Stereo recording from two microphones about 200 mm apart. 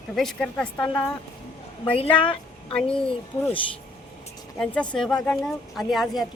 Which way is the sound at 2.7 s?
5° left (ahead or behind).